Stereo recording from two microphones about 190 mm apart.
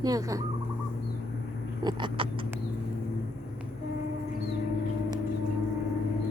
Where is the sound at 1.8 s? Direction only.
25° right (ahead or behind).